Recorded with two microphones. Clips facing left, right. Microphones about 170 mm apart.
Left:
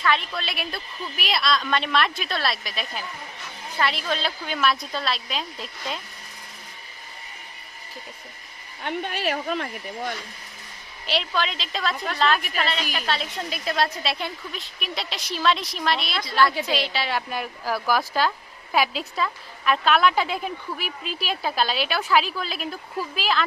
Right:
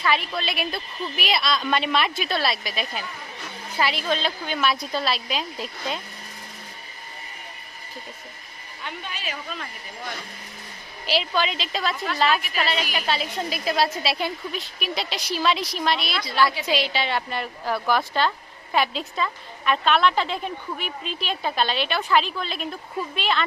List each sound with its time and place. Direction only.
0.0 s a woman's voice: 5° right (ahead or behind)
8.8 s speech: 55° left (ahead or behind)
11.0 s a woman's voice: centre (ahead or behind)